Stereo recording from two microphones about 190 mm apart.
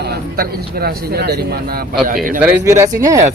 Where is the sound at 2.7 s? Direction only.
15° right (ahead or behind).